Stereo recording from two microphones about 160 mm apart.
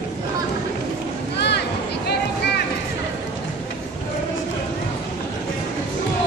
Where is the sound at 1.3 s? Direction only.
90° left.